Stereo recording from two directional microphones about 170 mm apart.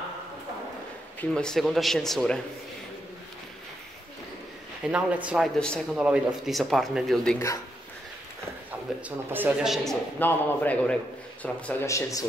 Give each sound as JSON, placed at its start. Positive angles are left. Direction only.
{"t": 1.3, "sound": "speech", "side_deg": 5}
{"t": 4.8, "sound": "speech", "side_deg": -5}
{"t": 5.6, "sound": "speech", "side_deg": 5}
{"t": 7.3, "sound": "a man's voice", "side_deg": 20}
{"t": 9.3, "sound": "speech", "side_deg": -10}
{"t": 10.1, "sound": "a man's voice", "side_deg": 10}